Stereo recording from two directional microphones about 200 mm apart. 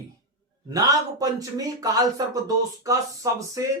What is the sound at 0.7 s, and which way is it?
A man's voice, 15° right (ahead or behind).